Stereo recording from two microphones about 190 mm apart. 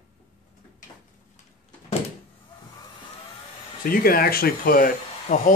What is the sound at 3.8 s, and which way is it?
Speech, 50° left (ahead or behind).